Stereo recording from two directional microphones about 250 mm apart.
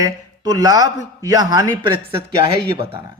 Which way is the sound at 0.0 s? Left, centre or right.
Centre.